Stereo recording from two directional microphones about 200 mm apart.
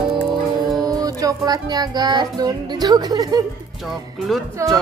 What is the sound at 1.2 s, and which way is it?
Speech, 20° right (ahead or behind).